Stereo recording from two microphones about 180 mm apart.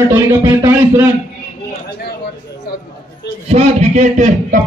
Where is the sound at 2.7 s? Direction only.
60° left (ahead or behind).